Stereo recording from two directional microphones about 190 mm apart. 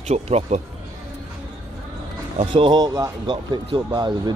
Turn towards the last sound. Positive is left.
turn(degrees=-20)  # may be behind; listen again after turning